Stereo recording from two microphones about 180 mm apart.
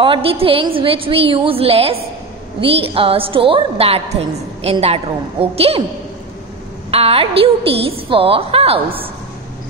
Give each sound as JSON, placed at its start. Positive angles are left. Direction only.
{"t": 0.0, "sound": "a woman's voice", "side_deg": -30}
{"t": 6.9, "sound": "a woman's voice", "side_deg": -35}